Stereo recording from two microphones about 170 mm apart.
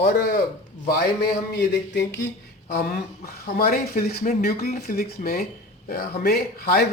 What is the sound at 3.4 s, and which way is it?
Speech, 60° left (ahead or behind).